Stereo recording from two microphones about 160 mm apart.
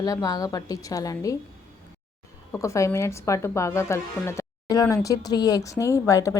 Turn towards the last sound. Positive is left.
turn(degrees=20)  # may be behind; listen again after turning